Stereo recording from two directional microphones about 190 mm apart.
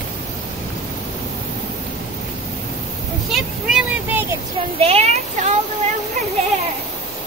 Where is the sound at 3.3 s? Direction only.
5° right (ahead or behind).